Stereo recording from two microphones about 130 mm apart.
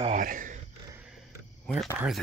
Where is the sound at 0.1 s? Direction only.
90° right.